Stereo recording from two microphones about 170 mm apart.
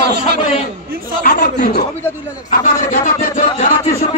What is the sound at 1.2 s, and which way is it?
Speech, 55° left (ahead or behind).